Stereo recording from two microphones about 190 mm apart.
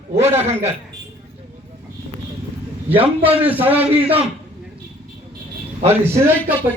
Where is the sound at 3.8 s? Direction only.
30° right (ahead or behind).